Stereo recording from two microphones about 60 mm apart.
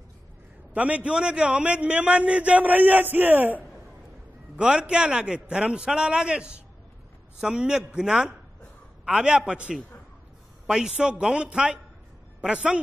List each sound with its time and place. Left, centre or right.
0.7 s a man's voice: right
4.6 s a man's voice: centre